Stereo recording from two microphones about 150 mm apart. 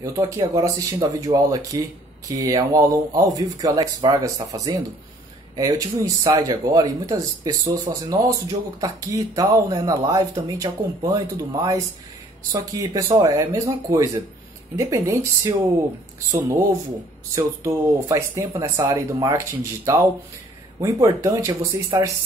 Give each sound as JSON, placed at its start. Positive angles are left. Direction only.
{"t": 0.0, "sound": "speech", "side_deg": -20}
{"t": 18.6, "sound": "speech", "side_deg": -25}
{"t": 21.2, "sound": "speech", "side_deg": -20}